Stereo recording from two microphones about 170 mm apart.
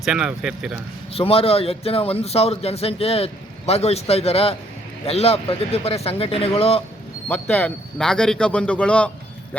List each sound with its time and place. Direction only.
0.0 s speech: 5° right (ahead or behind)
1.1 s a man's voice: 35° left (ahead or behind)
7.3 s speech: 10° left (ahead or behind)